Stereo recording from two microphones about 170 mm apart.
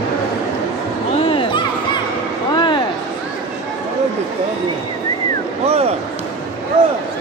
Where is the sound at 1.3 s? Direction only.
30° left (ahead or behind).